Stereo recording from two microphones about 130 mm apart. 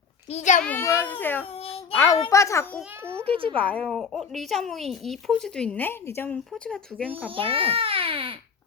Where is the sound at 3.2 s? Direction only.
45° right (ahead or behind).